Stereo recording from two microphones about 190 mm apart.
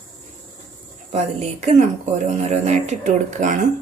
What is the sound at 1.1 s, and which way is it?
Speech, 35° right (ahead or behind).